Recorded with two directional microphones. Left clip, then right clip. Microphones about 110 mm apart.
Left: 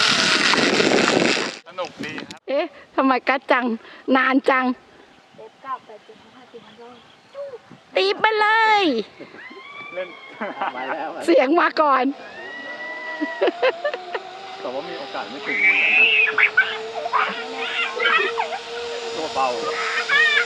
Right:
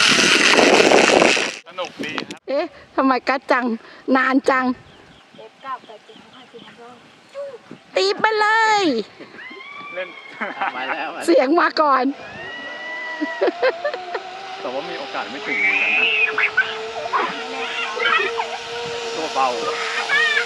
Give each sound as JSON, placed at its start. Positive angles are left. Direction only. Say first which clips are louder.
{"t": 0.0, "sound": "vehicle", "louder": "right 3 dB", "side_deg": 0}
{"t": 2.2, "sound": "speech", "louder": "left 1 dB", "side_deg": 0}
{"t": 5.7, "sound": "speech", "louder": "even", "side_deg": -35}
{"t": 7.9, "sound": "speech", "louder": "right 1 dB", "side_deg": -5}
{"t": 9.9, "sound": "speech", "louder": "right 1 dB", "side_deg": -45}
{"t": 11.3, "sound": "speech", "louder": "right 1 dB", "side_deg": 0}
{"t": 14.1, "sound": "a sound", "louder": "right 2 dB", "side_deg": 0}
{"t": 14.5, "sound": "speech", "louder": "right 2 dB", "side_deg": -45}
{"t": 15.4, "sound": "speech", "louder": "left 1 dB", "side_deg": 0}
{"t": 17.6, "sound": "a sound", "louder": "even", "side_deg": 0}